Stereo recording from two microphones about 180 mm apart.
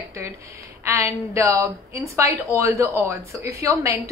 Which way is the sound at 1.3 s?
15° right (ahead or behind).